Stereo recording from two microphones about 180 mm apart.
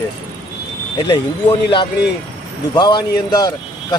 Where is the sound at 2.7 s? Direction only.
25° left (ahead or behind).